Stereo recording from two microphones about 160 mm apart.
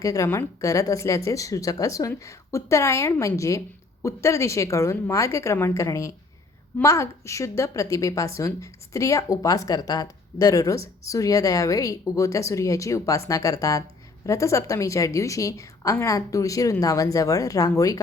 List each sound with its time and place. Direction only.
0.0 s a woman's voice: 20° left (ahead or behind)